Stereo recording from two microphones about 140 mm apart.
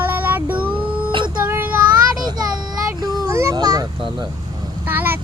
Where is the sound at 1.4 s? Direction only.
15° right (ahead or behind).